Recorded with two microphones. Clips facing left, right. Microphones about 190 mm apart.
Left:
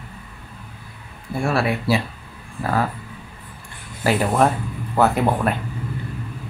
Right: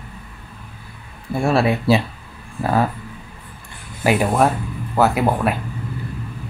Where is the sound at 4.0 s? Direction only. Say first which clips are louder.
Right 2 dB; 15° right (ahead or behind).